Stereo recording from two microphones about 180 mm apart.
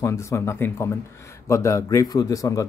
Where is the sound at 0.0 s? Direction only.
15° left (ahead or behind).